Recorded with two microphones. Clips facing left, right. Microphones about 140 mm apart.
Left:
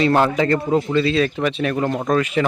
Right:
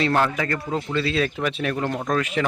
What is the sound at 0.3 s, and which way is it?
Speech, 25° left (ahead or behind).